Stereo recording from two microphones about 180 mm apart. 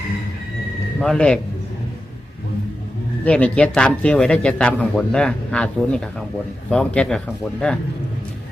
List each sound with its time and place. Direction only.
1.0 s speech: 5° left (ahead or behind)
3.2 s speech: 5° left (ahead or behind)